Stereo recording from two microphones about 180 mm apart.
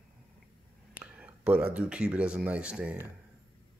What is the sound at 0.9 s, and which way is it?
Speech, 5° right (ahead or behind).